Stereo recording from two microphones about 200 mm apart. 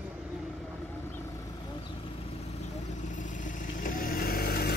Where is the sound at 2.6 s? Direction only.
40° left (ahead or behind).